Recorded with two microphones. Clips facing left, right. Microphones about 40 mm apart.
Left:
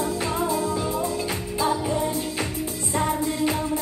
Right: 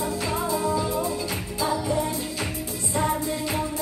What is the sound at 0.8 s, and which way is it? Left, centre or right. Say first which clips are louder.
Music: left 1 dB; centre.